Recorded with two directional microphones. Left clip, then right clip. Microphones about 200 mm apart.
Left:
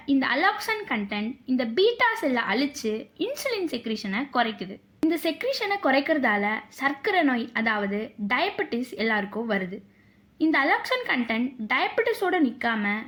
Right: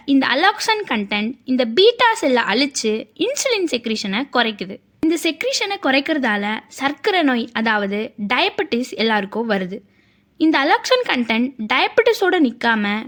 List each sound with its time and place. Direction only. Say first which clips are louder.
0.1 s a woman's voice: right 7 dB; 40° right (ahead or behind)